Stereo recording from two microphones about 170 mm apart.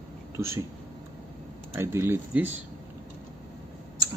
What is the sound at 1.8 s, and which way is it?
Speech, 15° right (ahead or behind).